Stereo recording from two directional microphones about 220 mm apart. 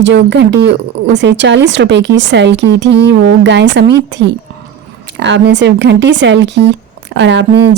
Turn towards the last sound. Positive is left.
turn(degrees=-55)  # may be behind; listen again after turning